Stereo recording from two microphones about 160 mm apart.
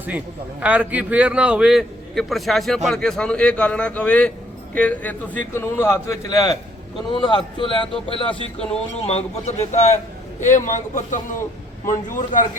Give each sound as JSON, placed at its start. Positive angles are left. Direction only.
{"t": 0.6, "sound": "a man's voice", "side_deg": -10}